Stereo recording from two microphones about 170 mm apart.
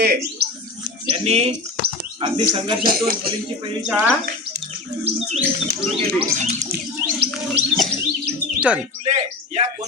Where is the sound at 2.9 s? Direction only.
60° right (ahead or behind).